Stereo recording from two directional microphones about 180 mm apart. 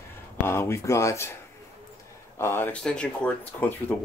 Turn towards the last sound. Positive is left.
turn(degrees=10)  # may be behind; listen again after turning